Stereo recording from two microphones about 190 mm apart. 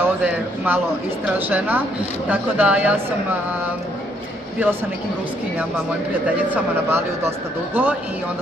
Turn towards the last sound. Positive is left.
turn(degrees=-10)  # may be behind; listen again after turning